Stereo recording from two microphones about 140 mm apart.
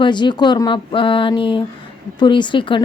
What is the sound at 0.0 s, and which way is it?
Speech, 35° left (ahead or behind).